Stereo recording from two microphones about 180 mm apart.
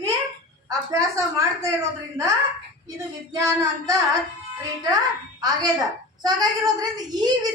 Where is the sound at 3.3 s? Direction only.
20° right (ahead or behind).